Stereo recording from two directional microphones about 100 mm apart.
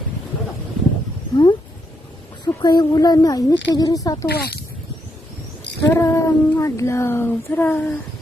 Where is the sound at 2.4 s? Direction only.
45° left (ahead or behind).